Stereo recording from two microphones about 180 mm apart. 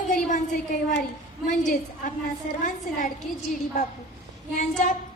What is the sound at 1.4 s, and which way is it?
A woman's voice, 45° left (ahead or behind).